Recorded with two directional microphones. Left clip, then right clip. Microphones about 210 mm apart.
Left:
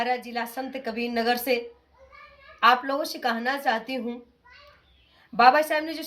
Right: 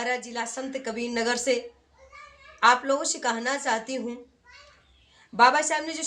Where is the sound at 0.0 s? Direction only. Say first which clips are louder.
Left 2 dB; 15° right (ahead or behind).